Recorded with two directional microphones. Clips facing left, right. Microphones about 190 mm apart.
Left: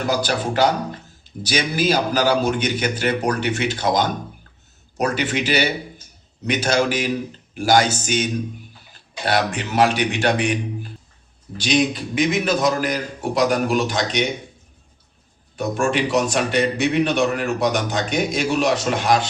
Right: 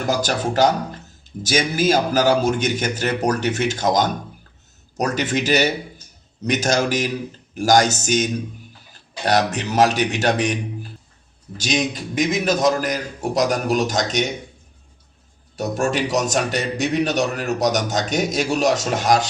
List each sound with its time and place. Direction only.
0.1 s a man's voice: 45° right (ahead or behind)
11.5 s a man's voice: 45° right (ahead or behind)
15.5 s a man's voice: 40° right (ahead or behind)